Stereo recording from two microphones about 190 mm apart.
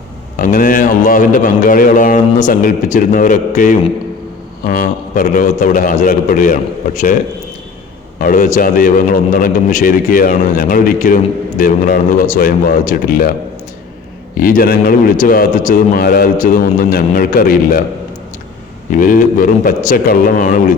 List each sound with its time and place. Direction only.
0.3 s a man's voice: 45° left (ahead or behind)
8.2 s a man's voice: 45° left (ahead or behind)
14.3 s a man's voice: 50° left (ahead or behind)
18.9 s a man's voice: 45° left (ahead or behind)